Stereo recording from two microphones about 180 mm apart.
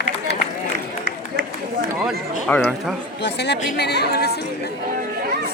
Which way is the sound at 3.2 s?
70° left (ahead or behind).